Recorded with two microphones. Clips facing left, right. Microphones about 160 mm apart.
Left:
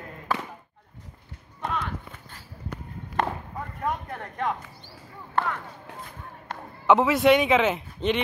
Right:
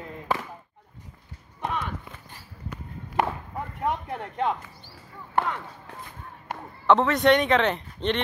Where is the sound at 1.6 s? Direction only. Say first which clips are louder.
Even; 15° right (ahead or behind).